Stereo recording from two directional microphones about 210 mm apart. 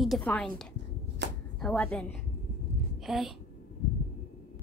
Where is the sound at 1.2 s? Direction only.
55° right (ahead or behind).